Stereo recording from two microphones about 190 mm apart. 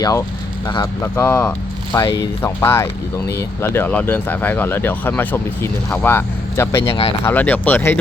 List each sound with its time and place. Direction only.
0.0 s speech: 15° left (ahead or behind)